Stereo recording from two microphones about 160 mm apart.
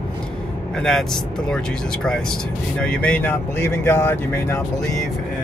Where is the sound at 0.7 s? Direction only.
5° left (ahead or behind).